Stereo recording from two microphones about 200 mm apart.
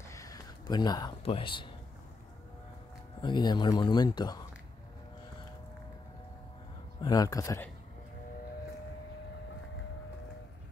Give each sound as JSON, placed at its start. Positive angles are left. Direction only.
{"t": 0.1, "sound": "a sound", "side_deg": 15}
{"t": 3.2, "sound": "speech", "side_deg": 20}
{"t": 7.0, "sound": "speech", "side_deg": 20}